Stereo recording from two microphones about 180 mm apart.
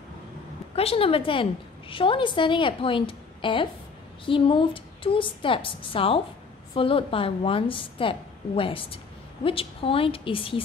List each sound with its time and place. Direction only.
0.7 s a woman's voice: 30° left (ahead or behind)